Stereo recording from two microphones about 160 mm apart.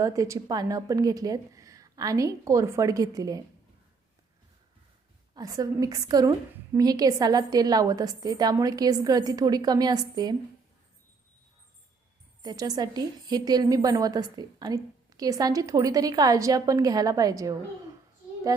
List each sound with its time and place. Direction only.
0.0 s a woman's voice: 20° right (ahead or behind)
5.3 s a woman's voice: 25° right (ahead or behind)
12.4 s a woman's voice: 25° right (ahead or behind)